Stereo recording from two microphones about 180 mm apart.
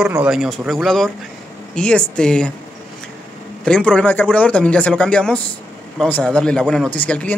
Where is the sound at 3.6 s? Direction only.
5° left (ahead or behind).